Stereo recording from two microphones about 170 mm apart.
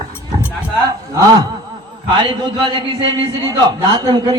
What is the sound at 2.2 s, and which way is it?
Speech, 25° right (ahead or behind).